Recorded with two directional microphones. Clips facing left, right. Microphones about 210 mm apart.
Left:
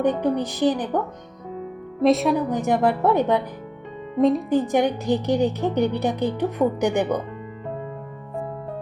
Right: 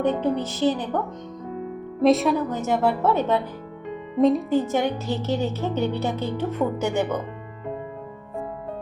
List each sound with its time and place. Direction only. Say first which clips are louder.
0.0 s a woman's voice: left 1 dB; 15° left (ahead or behind)
2.0 s a woman's voice: even; centre (ahead or behind)
2.5 s a woman's voice: left 2 dB; 15° left (ahead or behind)
4.2 s a woman's voice: even; centre (ahead or behind)
4.4 s a woman's voice: left 2 dB; 15° left (ahead or behind)